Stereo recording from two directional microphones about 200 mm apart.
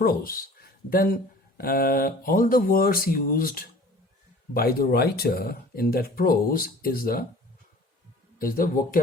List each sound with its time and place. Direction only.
0.0 s speech: 45° left (ahead or behind)
8.4 s speech: 45° left (ahead or behind)